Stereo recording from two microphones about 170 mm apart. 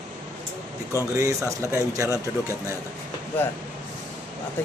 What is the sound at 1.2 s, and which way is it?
Speech, 20° right (ahead or behind).